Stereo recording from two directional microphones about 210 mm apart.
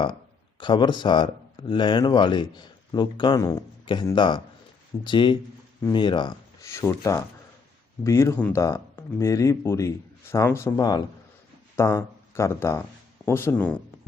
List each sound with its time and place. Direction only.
0.6 s speech: 20° left (ahead or behind)